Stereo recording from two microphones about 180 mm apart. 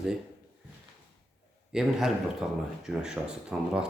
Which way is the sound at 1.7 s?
5° right (ahead or behind).